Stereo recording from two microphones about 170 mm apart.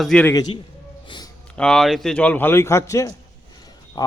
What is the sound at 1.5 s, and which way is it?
Speech, 5° left (ahead or behind).